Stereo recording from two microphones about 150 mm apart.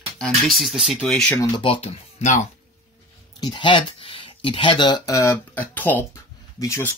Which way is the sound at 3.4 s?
30° left (ahead or behind).